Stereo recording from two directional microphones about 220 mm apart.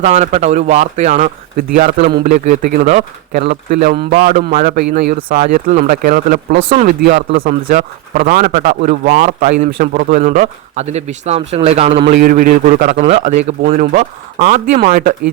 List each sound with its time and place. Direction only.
0.0 s speech: 30° right (ahead or behind)
6.6 s a man's voice: 25° right (ahead or behind)
6.8 s speech: 45° right (ahead or behind)
13.0 s a man's voice: 30° right (ahead or behind)